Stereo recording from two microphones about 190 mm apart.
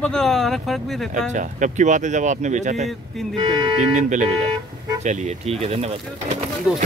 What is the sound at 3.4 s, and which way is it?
Speech, 25° right (ahead or behind).